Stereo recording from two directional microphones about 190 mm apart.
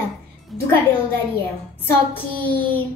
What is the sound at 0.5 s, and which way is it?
Speech, centre (ahead or behind).